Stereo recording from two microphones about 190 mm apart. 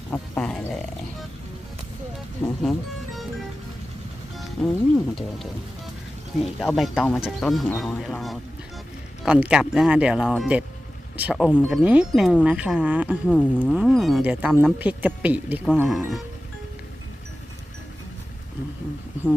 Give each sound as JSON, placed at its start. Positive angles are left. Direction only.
{"t": 0.1, "sound": "a sound", "side_deg": 5}
{"t": 2.1, "sound": "speech", "side_deg": 0}
{"t": 4.6, "sound": "speech", "side_deg": 5}
{"t": 6.4, "sound": "speech", "side_deg": 0}
{"t": 13.3, "sound": "speech", "side_deg": 5}